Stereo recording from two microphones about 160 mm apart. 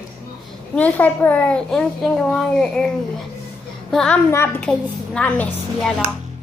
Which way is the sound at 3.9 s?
5° left (ahead or behind).